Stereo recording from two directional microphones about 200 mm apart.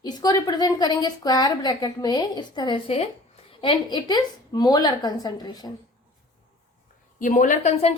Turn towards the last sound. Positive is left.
turn(degrees=35)  # may be behind; listen again after turning